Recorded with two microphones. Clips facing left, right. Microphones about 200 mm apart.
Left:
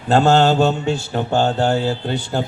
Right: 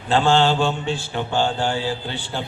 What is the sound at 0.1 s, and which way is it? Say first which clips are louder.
Mantra: left 4 dB; 45° left (ahead or behind).